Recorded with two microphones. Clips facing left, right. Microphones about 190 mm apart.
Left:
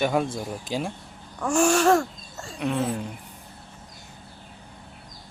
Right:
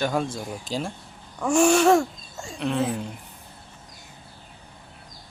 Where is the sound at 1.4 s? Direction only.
5° right (ahead or behind).